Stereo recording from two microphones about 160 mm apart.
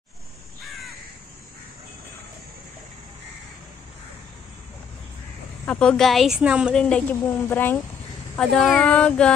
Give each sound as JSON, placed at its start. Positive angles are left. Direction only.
{"t": 5.7, "sound": "a woman's voice", "side_deg": 5}
{"t": 6.7, "sound": "a woman's voice", "side_deg": 5}